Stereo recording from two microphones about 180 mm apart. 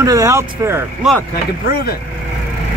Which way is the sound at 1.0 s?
5° right (ahead or behind).